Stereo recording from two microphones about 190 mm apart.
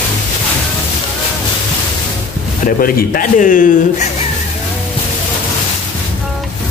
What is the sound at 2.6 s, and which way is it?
A man's voice, 50° left (ahead or behind).